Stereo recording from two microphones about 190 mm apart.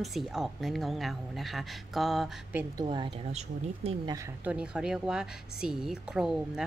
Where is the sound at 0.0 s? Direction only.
Centre (ahead or behind).